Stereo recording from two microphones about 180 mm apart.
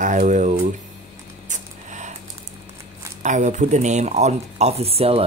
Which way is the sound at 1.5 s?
40° right (ahead or behind).